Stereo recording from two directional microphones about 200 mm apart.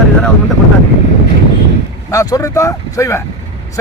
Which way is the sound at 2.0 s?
15° left (ahead or behind).